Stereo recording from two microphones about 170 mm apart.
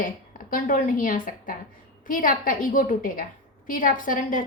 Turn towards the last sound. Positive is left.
turn(degrees=50)  # may be behind; listen again after turning